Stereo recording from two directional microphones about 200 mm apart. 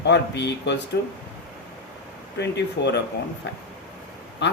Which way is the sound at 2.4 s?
60° left (ahead or behind).